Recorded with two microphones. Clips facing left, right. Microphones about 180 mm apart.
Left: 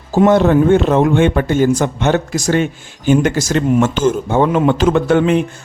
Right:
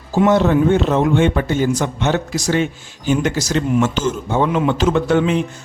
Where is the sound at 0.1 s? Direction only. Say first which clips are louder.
Left 3 dB; 50° left (ahead or behind).